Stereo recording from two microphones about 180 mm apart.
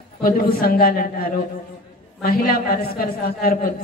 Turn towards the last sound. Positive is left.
turn(degrees=55)  # may be behind; listen again after turning